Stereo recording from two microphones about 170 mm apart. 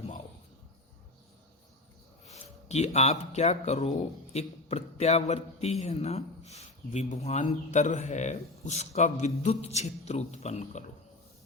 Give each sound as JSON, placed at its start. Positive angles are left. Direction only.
{"t": 2.6, "sound": "a man's voice", "side_deg": 40}